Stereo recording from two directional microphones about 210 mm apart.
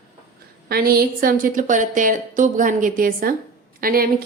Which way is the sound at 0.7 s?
45° right (ahead or behind).